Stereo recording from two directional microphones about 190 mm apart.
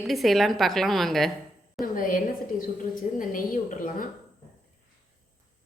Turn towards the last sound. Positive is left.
turn(degrees=45)  # may be behind; listen again after turning